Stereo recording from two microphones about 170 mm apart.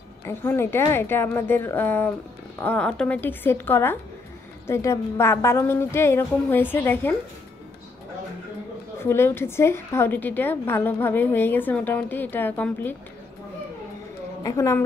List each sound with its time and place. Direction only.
0.2 s a woman's voice: 15° left (ahead or behind)
9.0 s a woman's voice: 15° left (ahead or behind)
14.4 s a woman's voice: 20° left (ahead or behind)